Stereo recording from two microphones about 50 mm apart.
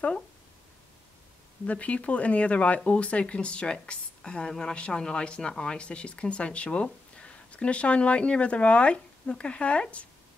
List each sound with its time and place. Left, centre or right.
1.7 s speech: left